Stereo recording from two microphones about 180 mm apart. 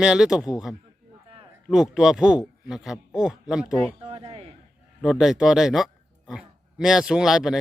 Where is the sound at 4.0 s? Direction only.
30° right (ahead or behind).